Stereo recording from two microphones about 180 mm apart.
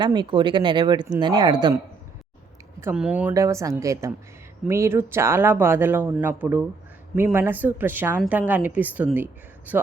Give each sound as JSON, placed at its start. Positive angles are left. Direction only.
{"t": 0.0, "sound": "speech", "side_deg": -25}
{"t": 2.9, "sound": "speech", "side_deg": -5}